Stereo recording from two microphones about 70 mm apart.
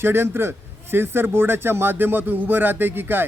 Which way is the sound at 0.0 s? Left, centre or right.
Right.